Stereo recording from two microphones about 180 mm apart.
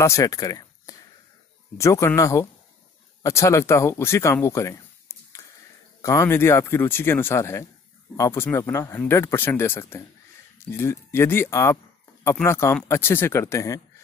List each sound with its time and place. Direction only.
0.0 s speech: 15° left (ahead or behind)